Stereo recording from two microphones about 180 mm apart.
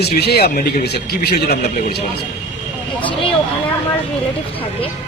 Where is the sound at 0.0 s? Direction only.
65° left (ahead or behind).